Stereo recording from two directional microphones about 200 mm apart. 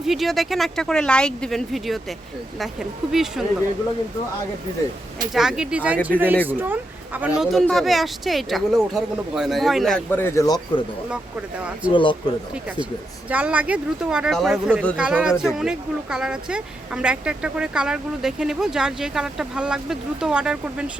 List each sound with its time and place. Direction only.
0.0 s speech: centre (ahead or behind)
5.3 s speech: 5° right (ahead or behind); by 10.6 s 15° left (ahead or behind)
11.9 s speech: 25° left (ahead or behind)
13.2 s speech: 5° right (ahead or behind)